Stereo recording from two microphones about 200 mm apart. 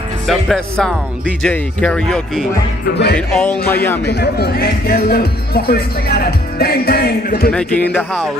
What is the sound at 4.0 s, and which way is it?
Speech, 55° left (ahead or behind).